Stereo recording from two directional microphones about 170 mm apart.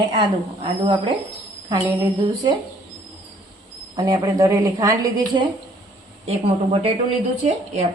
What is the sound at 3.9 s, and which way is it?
Speech, 25° right (ahead or behind).